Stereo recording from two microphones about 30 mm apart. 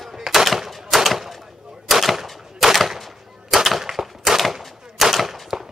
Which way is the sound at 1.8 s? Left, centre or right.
Centre.